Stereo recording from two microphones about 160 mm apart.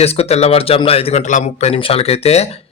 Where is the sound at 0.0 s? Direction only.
40° left (ahead or behind).